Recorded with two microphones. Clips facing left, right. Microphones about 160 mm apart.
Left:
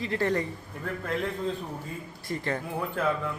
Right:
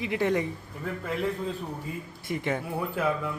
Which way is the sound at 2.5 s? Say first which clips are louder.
Right 1 dB; 10° right (ahead or behind).